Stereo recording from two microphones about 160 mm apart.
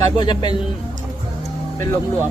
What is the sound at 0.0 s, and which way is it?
Speech, 25° left (ahead or behind).